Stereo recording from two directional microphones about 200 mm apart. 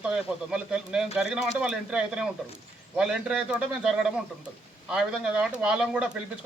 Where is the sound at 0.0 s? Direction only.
5° right (ahead or behind).